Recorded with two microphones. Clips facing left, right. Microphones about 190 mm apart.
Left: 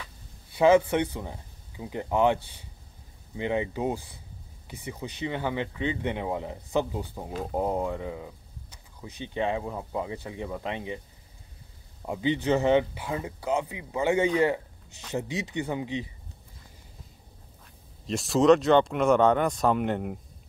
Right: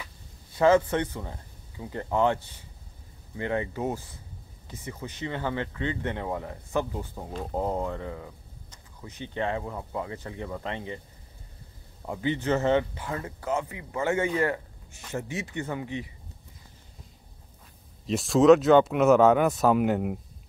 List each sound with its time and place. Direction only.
0.6 s speech: 10° left (ahead or behind)
12.1 s speech: 15° left (ahead or behind)
18.0 s speech: centre (ahead or behind)